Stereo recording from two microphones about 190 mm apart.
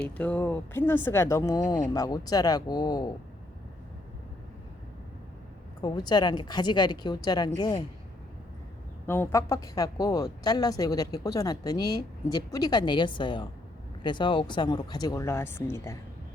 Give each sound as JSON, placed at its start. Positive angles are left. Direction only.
{"t": 0.0, "sound": "speech", "side_deg": 5}
{"t": 5.8, "sound": "speech", "side_deg": 20}
{"t": 9.0, "sound": "speech", "side_deg": 10}